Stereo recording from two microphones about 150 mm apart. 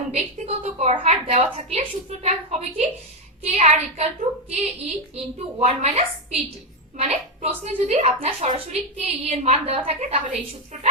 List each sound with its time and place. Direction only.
0.1 s a woman's voice: 45° right (ahead or behind)